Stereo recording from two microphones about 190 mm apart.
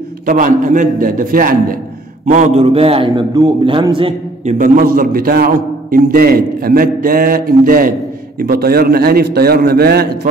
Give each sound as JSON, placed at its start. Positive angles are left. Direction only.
{"t": 0.3, "sound": "a man's voice", "side_deg": -45}
{"t": 4.6, "sound": "a man's voice", "side_deg": -50}